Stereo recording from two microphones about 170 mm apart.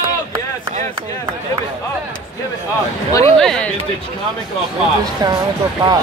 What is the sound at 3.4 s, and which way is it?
Speech, 5° left (ahead or behind).